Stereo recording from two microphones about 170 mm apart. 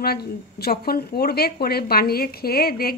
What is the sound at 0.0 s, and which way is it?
Speech, 70° left (ahead or behind).